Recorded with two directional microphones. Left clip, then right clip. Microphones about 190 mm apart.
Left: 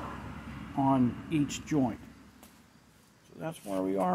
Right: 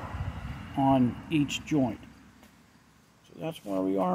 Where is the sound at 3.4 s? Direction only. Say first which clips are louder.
Right 2 dB; 20° right (ahead or behind).